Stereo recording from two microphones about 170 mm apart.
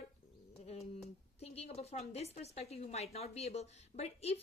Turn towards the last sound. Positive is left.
turn(degrees=35)  # may be behind; listen again after turning